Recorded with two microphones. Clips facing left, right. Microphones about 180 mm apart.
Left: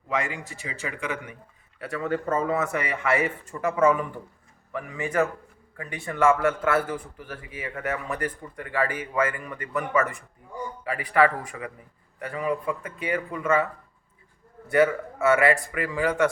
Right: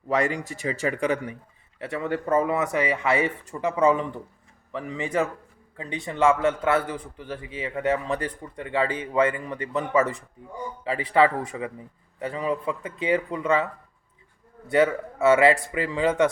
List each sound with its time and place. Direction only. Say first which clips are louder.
0.1 s a man's voice: right 5 dB; 40° right (ahead or behind)
1.8 s a man's voice: even; 20° right (ahead or behind)
14.7 s a man's voice: even; 25° right (ahead or behind)